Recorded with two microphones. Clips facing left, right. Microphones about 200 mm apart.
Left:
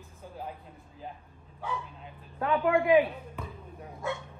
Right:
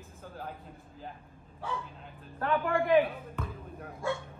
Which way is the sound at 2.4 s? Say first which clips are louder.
Left 3 dB; 5° left (ahead or behind).